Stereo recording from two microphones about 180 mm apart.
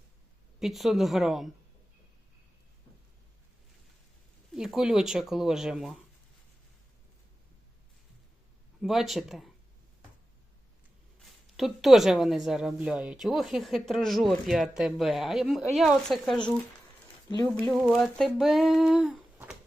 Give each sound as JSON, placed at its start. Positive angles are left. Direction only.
{"t": 0.6, "sound": "a woman's voice", "side_deg": 0}
{"t": 4.5, "sound": "a woman's voice", "side_deg": -5}
{"t": 8.8, "sound": "a woman's voice", "side_deg": 0}
{"t": 11.5, "sound": "a woman's voice", "side_deg": 0}